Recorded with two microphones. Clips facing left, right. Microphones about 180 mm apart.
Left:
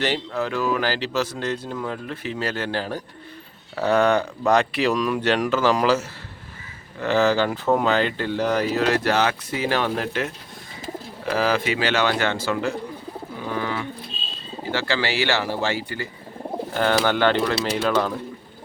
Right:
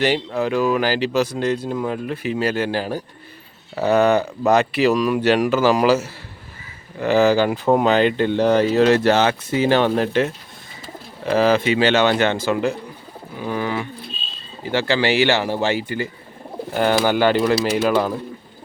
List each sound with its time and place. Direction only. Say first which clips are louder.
0.0 s speech: right 5 dB; 15° right (ahead or behind)
11.3 s speech: right 5 dB; 25° right (ahead or behind)